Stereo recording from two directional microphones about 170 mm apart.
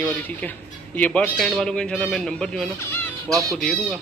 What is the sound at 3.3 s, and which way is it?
Speech, 20° right (ahead or behind).